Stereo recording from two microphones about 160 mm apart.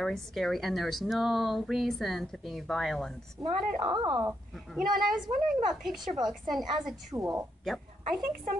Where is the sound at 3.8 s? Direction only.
30° right (ahead or behind).